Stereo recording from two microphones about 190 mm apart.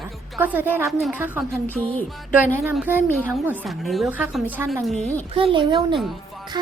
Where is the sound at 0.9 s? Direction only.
Centre (ahead or behind).